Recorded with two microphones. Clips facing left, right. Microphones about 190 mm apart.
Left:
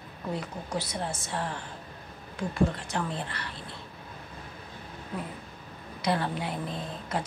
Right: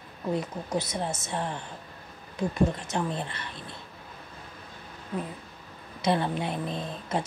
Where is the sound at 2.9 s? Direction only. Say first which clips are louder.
Right 2 dB; 20° right (ahead or behind).